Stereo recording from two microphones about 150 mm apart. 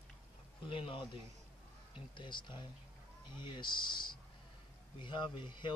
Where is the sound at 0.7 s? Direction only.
35° left (ahead or behind).